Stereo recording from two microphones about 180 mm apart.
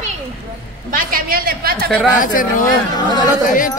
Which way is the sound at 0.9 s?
50° right (ahead or behind).